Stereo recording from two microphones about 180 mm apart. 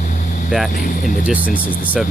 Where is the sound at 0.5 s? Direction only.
5° right (ahead or behind).